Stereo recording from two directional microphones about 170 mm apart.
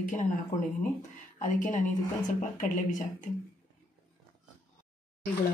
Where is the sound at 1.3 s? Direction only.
50° left (ahead or behind).